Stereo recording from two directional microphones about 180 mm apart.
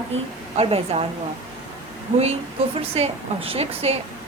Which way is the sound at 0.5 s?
35° right (ahead or behind).